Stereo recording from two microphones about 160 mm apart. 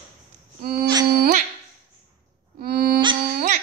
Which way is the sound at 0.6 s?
65° right (ahead or behind).